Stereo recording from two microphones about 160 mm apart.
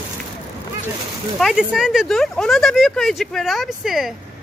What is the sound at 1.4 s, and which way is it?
Speech, 5° right (ahead or behind).